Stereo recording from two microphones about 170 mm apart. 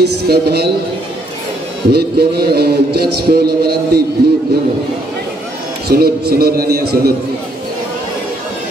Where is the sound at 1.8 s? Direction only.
70° right (ahead or behind).